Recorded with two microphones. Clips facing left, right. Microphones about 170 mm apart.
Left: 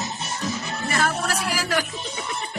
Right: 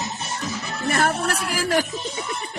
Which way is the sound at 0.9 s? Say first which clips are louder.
Right 3 dB; 55° right (ahead or behind).